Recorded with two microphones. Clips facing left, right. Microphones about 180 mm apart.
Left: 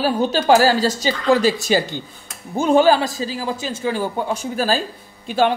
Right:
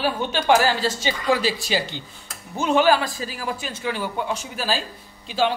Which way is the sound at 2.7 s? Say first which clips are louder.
Left 4 dB; 30° left (ahead or behind).